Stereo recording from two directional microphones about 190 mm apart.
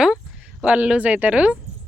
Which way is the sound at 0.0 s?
5° right (ahead or behind).